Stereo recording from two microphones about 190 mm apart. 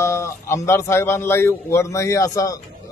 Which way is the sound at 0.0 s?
15° left (ahead or behind).